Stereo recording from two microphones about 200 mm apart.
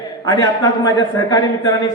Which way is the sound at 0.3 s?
20° left (ahead or behind).